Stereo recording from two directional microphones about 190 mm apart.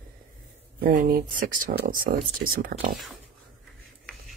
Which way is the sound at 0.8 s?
50° right (ahead or behind).